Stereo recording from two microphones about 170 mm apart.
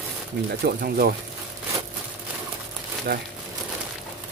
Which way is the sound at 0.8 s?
60° right (ahead or behind).